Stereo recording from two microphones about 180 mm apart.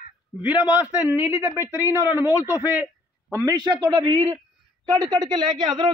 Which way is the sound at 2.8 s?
15° right (ahead or behind).